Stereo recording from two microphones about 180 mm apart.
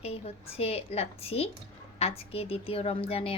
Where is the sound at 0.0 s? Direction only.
35° left (ahead or behind).